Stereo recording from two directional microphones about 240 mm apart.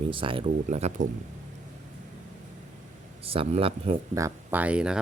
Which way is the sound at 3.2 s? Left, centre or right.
Right.